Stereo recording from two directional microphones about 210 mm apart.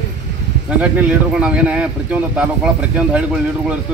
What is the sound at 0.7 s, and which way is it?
Speech, 5° right (ahead or behind).